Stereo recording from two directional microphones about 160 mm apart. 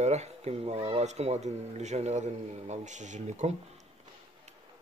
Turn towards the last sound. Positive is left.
turn(degrees=-45)  # may be behind; listen again after turning